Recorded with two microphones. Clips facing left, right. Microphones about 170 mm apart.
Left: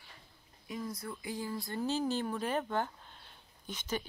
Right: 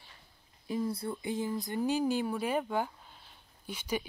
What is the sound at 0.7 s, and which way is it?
Speech, 30° right (ahead or behind).